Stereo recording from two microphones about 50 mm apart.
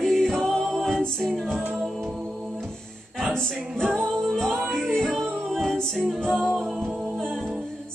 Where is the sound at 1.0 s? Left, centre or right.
Centre.